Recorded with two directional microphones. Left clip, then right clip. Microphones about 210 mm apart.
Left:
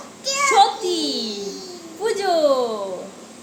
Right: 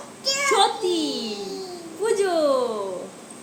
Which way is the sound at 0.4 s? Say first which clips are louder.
Left 5 dB; 20° left (ahead or behind).